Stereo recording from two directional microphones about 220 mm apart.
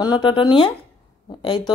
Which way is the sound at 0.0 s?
20° left (ahead or behind).